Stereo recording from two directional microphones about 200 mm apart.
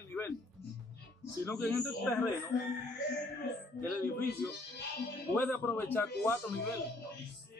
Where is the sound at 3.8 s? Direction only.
10° left (ahead or behind).